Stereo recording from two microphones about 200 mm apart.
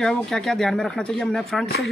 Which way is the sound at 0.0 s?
Centre (ahead or behind).